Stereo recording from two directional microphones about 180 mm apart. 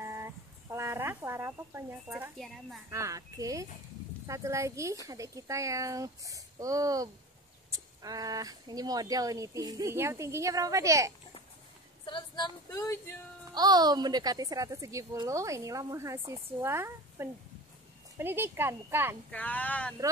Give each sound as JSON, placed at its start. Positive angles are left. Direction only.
{"t": 0.0, "sound": "a sound", "side_deg": -15}
{"t": 2.3, "sound": "a woman's voice", "side_deg": 0}
{"t": 2.9, "sound": "a woman's voice", "side_deg": -15}
{"t": 12.1, "sound": "speech", "side_deg": 25}
{"t": 13.6, "sound": "a woman's voice", "side_deg": -20}
{"t": 19.3, "sound": "speech", "side_deg": 10}